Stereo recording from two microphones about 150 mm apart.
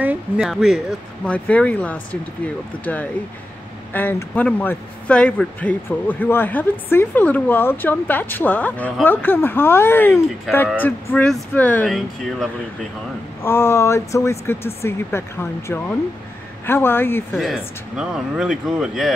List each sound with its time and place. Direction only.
0.0 s speech: 10° right (ahead or behind)
1.2 s a man's voice: 10° left (ahead or behind)
13.4 s a man's voice: 15° left (ahead or behind)
17.4 s speech: 5° right (ahead or behind)